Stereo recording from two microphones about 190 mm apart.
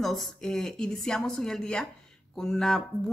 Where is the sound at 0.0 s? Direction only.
Centre (ahead or behind).